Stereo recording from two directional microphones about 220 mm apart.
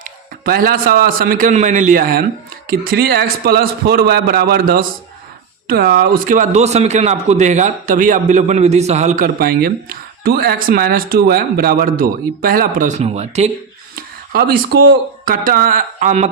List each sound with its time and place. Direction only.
0.0 s a man's voice: 40° right (ahead or behind)
14.3 s a man's voice: 45° right (ahead or behind)